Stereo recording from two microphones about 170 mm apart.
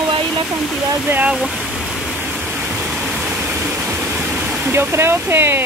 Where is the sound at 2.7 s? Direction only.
5° right (ahead or behind).